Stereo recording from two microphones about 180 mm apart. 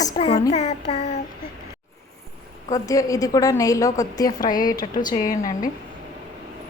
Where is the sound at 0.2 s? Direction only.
30° left (ahead or behind).